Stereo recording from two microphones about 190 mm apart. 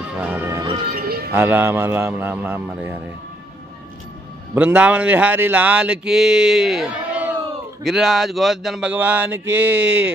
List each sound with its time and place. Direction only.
0.2 s music: 10° right (ahead or behind)
0.9 s music: 55° right (ahead or behind)
1.3 s speech: 10° right (ahead or behind)
4.6 s speech: 5° right (ahead or behind)